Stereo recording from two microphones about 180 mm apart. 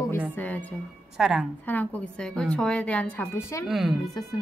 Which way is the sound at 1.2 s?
Centre (ahead or behind).